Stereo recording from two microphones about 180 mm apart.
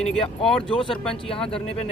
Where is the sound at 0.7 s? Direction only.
30° left (ahead or behind).